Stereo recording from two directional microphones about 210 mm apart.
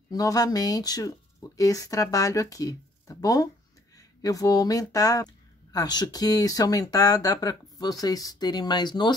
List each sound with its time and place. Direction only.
0.1 s speech: 15° left (ahead or behind)